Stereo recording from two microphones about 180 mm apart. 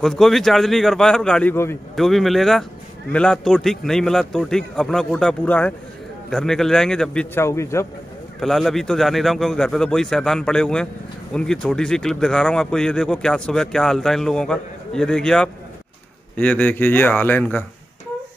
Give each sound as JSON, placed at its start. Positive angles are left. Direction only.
{"t": 0.0, "sound": "speech", "side_deg": 0}
{"t": 2.0, "sound": "speech", "side_deg": 0}
{"t": 7.4, "sound": "speech", "side_deg": 15}
{"t": 8.4, "sound": "speech", "side_deg": 0}